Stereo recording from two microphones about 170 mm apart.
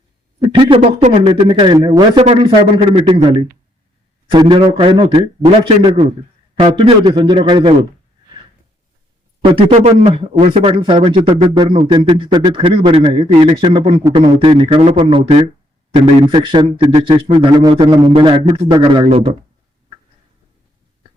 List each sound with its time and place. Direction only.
0.3 s a man's voice: 30° right (ahead or behind)
9.6 s a man's voice: 40° right (ahead or behind)